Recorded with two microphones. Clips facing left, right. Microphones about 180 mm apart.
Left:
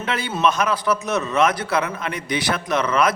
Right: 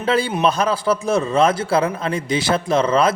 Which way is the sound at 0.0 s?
30° right (ahead or behind).